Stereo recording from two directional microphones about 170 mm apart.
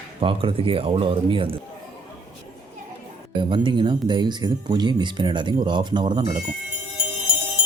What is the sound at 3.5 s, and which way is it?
Speech, 30° right (ahead or behind).